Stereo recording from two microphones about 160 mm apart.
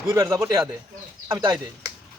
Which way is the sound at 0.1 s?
20° right (ahead or behind).